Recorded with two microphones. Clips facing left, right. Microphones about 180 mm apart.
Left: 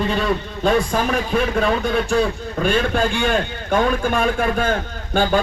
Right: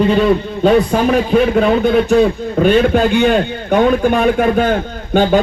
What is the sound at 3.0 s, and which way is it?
Speech, 20° right (ahead or behind).